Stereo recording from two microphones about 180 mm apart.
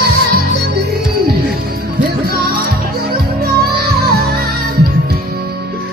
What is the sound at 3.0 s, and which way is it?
Music, 55° right (ahead or behind).